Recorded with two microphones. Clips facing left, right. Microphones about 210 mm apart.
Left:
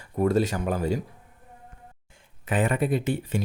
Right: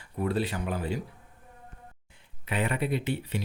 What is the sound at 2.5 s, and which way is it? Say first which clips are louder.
Speech: left 5 dB; 45° left (ahead or behind).